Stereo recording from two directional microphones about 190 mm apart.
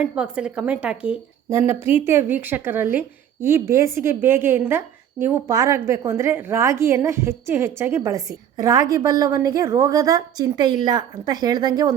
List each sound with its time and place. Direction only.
0.0 s a woman's voice: 5° right (ahead or behind)